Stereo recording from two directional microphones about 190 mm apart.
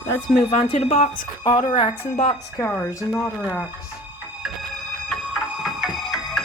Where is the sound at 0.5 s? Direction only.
35° left (ahead or behind).